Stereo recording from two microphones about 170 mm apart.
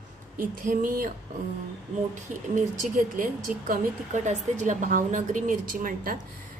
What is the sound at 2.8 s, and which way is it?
A woman's voice, 50° right (ahead or behind).